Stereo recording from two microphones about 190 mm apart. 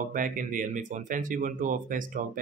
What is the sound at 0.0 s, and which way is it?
A man's voice, 45° right (ahead or behind).